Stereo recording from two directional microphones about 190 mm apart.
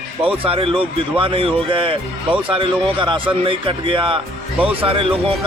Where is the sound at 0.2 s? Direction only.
30° right (ahead or behind).